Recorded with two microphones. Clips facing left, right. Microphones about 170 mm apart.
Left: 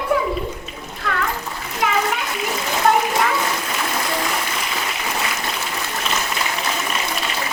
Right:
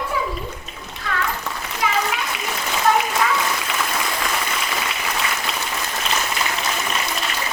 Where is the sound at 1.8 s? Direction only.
60° left (ahead or behind).